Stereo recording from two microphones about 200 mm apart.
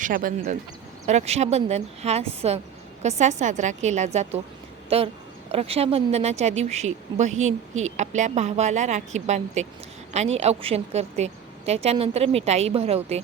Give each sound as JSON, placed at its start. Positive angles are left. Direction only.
{"t": 0.0, "sound": "speech", "side_deg": -45}
{"t": 1.0, "sound": "a woman's voice", "side_deg": -35}